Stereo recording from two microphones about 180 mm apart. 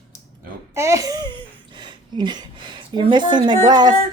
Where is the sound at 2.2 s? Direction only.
25° right (ahead or behind).